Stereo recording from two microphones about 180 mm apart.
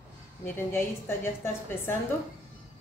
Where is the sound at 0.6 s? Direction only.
15° left (ahead or behind).